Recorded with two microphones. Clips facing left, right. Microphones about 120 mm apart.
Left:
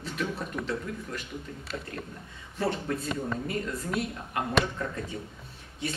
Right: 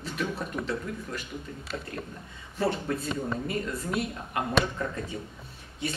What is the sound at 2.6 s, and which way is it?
Speech, 5° right (ahead or behind).